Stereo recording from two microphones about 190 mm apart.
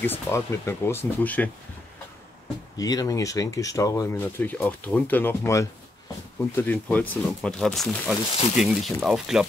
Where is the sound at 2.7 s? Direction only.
20° left (ahead or behind).